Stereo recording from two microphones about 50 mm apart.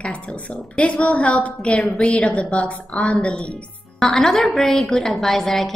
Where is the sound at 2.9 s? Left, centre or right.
Centre.